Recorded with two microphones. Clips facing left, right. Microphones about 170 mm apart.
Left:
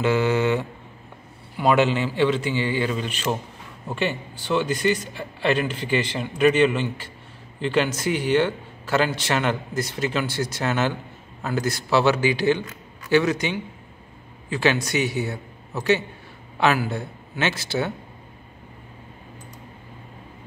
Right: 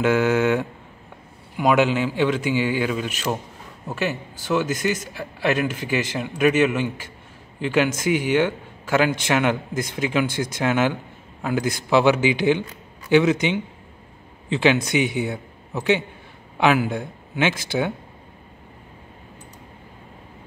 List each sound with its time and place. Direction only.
0.0 s a man's voice: 10° right (ahead or behind)